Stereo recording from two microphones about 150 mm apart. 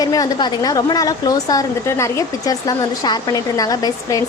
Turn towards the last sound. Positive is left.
turn(degrees=25)  # may be behind; listen again after turning